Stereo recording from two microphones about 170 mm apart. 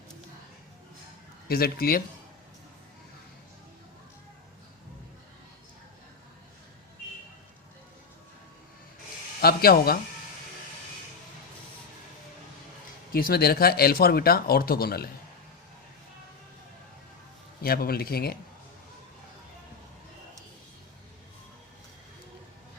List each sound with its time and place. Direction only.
1.5 s speech: 65° left (ahead or behind)
9.4 s speech: 65° left (ahead or behind)
13.1 s speech: 60° left (ahead or behind)
17.6 s speech: 65° left (ahead or behind)